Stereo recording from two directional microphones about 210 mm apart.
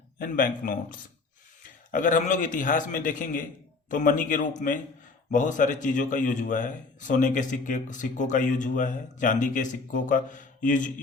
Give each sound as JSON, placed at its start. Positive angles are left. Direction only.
{"t": 0.2, "sound": "a man's voice", "side_deg": 40}